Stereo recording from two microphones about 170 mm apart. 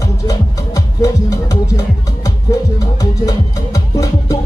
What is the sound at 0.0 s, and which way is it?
Music, 20° left (ahead or behind).